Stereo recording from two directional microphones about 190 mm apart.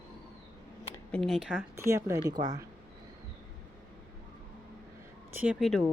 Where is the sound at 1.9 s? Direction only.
15° right (ahead or behind).